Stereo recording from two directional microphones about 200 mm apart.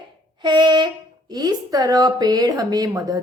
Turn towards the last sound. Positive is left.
turn(degrees=-20)  # may be behind; listen again after turning